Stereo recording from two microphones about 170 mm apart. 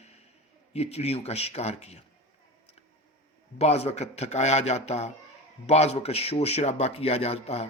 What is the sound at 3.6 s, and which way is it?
A man's voice, 40° left (ahead or behind).